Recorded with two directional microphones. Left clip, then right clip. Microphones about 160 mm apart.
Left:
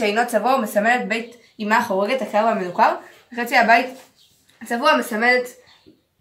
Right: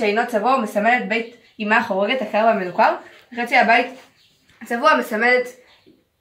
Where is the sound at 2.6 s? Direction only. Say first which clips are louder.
Even; centre (ahead or behind).